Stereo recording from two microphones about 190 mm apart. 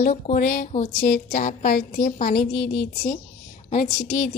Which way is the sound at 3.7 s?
45° left (ahead or behind).